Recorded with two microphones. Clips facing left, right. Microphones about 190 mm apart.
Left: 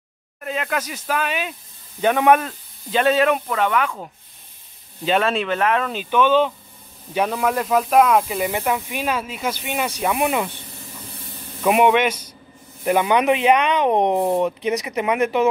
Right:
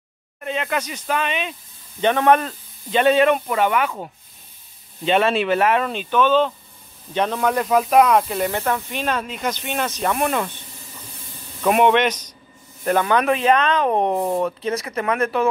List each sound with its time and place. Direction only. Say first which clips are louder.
0.4 s speech: right 1 dB; centre (ahead or behind)
5.0 s speech: right 2 dB; centre (ahead or behind)
6.0 s speech: left 1 dB; 10° left (ahead or behind)
11.6 s speech: even; 10° left (ahead or behind)